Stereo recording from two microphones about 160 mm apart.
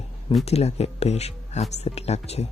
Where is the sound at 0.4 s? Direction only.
40° left (ahead or behind).